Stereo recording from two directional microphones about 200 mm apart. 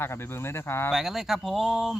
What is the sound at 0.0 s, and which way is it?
Speech, 10° left (ahead or behind).